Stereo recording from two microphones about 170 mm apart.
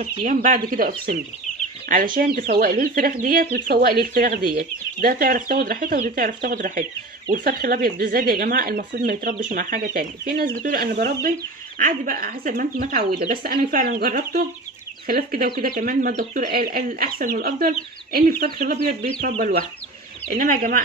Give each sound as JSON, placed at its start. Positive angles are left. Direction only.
{"t": 0.0, "sound": "speech", "side_deg": -50}